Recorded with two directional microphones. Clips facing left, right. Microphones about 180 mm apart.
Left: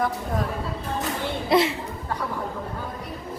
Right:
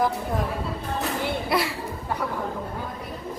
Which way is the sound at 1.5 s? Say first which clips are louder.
Left 7 dB; 20° left (ahead or behind).